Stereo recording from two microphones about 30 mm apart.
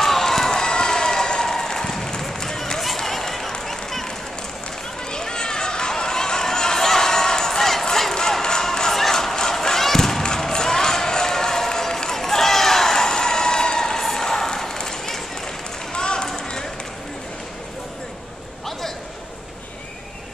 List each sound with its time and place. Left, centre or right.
0.0 s run: centre
0.7 s run: left; by 4.1 s centre
5.1 s a sound: left
6.8 s crowd: centre
8.1 s a sound: centre
10.2 s crowd: left
14.0 s run: centre